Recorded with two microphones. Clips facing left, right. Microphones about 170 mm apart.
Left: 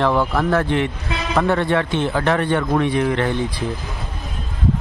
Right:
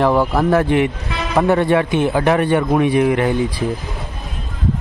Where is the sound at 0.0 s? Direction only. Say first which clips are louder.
Right 3 dB; 15° right (ahead or behind).